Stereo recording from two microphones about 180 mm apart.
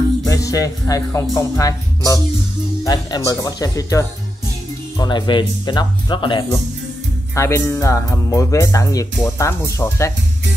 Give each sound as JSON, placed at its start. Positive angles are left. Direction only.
{"t": 0.3, "sound": "speech", "side_deg": 20}
{"t": 7.3, "sound": "speech", "side_deg": 15}